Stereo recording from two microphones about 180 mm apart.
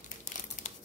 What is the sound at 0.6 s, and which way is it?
Crumpling, 40° left (ahead or behind).